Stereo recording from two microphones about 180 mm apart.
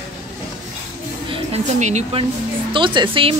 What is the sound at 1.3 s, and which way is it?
A woman's voice, 35° right (ahead or behind).